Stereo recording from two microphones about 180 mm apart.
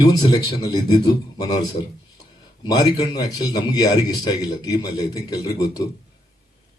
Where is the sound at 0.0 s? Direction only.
25° left (ahead or behind).